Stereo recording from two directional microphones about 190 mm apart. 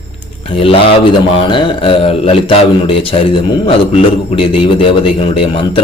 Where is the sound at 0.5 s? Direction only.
30° left (ahead or behind).